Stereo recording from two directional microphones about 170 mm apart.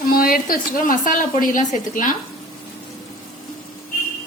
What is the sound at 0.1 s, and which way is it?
A woman's voice, 60° left (ahead or behind).